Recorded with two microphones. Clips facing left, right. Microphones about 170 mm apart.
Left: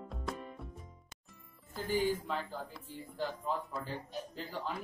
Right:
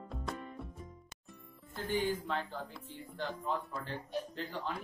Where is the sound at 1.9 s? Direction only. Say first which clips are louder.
Left 1 dB; 5° left (ahead or behind).